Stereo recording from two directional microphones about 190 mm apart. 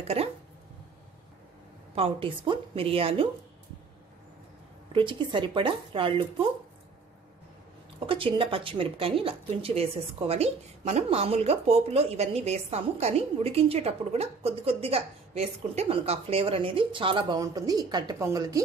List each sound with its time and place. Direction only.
0.2 s speech: 30° right (ahead or behind)
2.0 s speech: 30° right (ahead or behind)
4.9 s speech: 25° right (ahead or behind)
8.1 s speech: 30° right (ahead or behind)